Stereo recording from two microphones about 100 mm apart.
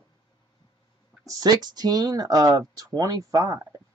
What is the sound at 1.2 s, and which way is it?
Speech, 40° right (ahead or behind).